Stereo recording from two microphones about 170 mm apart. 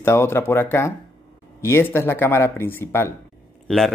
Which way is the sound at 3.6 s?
Centre (ahead or behind).